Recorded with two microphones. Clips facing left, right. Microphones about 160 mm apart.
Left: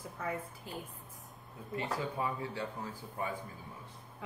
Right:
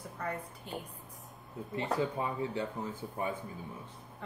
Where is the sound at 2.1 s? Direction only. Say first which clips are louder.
Right 2 dB; 25° right (ahead or behind).